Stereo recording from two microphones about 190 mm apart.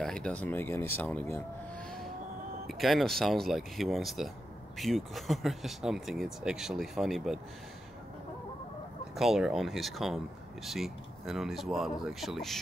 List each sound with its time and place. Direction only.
0.0 s speech: 5° left (ahead or behind)
2.8 s speech: centre (ahead or behind)
9.1 s speech: centre (ahead or behind)